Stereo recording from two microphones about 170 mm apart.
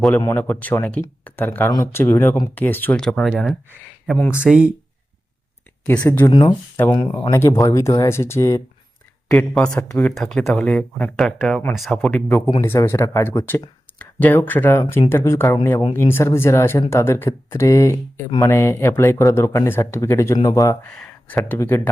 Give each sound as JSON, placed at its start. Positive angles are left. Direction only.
{"t": 0.2, "sound": "speech", "side_deg": 15}
{"t": 6.0, "sound": "speech", "side_deg": 15}
{"t": 9.3, "sound": "speech", "side_deg": 5}
{"t": 20.9, "sound": "speech", "side_deg": 5}